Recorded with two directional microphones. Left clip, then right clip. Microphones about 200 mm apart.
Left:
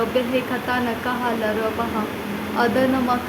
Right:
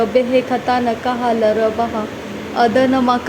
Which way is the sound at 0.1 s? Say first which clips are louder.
Right 8 dB; 20° right (ahead or behind).